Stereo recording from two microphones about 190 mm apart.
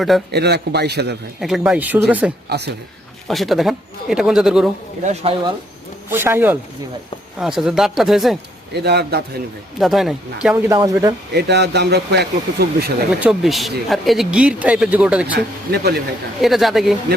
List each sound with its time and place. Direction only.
0.3 s speech: 60° right (ahead or behind)
1.4 s speech: centre (ahead or behind)
2.5 s speech: 60° right (ahead or behind)
3.2 s speech: centre (ahead or behind)
5.0 s speech: 30° right (ahead or behind)
6.1 s speech: 10° right (ahead or behind)
8.7 s speech: 60° right (ahead or behind)
9.7 s speech: centre (ahead or behind)
10.5 s speech: 15° right (ahead or behind)
11.3 s speech: 60° right (ahead or behind)
13.2 s speech: centre (ahead or behind)
15.4 s speech: 60° right (ahead or behind)
16.4 s speech: centre (ahead or behind)